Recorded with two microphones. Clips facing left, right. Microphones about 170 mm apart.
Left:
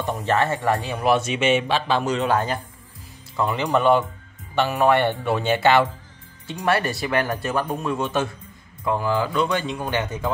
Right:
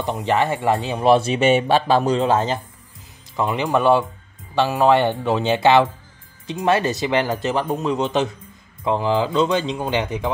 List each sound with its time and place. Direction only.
0.0 s speech: 15° right (ahead or behind)